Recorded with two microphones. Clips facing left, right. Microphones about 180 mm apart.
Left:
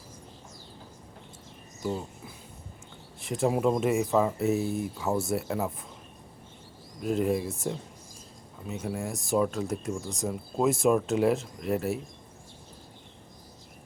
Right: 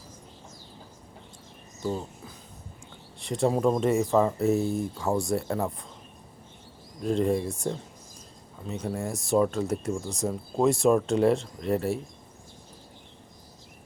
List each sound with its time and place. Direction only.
1.8 s speech: 10° left (ahead or behind)
7.0 s speech: 5° left (ahead or behind)